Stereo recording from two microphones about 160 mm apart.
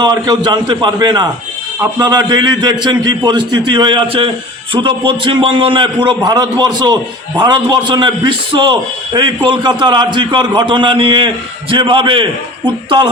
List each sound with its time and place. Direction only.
0.0 s a man's voice: 25° right (ahead or behind)